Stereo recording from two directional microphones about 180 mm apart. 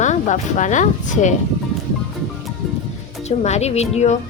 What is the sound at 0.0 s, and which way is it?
Speech, 40° left (ahead or behind).